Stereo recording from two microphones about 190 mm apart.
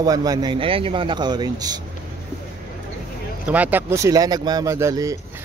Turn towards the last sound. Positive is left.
turn(degrees=-15)  # may be behind; listen again after turning